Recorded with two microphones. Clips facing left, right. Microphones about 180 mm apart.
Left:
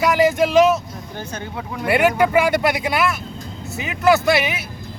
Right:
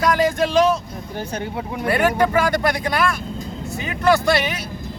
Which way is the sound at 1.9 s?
10° left (ahead or behind).